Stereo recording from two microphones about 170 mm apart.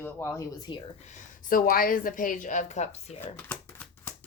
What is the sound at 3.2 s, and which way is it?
Typewriter, 10° left (ahead or behind).